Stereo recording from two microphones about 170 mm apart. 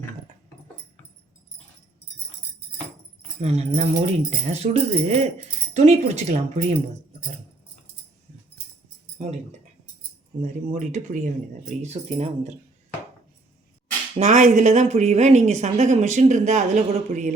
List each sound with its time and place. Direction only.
3.4 s speech: 40° right (ahead or behind)
10.4 s speech: 40° right (ahead or behind)
14.2 s speech: 45° right (ahead or behind)